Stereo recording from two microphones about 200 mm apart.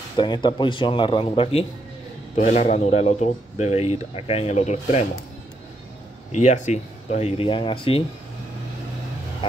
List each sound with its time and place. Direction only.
0.2 s a man's voice: 20° left (ahead or behind)
6.3 s speech: 35° left (ahead or behind)